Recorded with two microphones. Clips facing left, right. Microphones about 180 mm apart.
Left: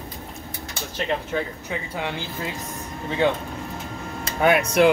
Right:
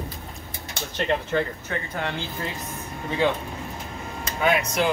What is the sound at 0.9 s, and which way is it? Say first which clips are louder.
Speech: right 2 dB; 5° left (ahead or behind).